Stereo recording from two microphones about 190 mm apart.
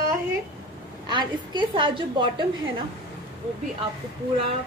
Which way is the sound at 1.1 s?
25° right (ahead or behind).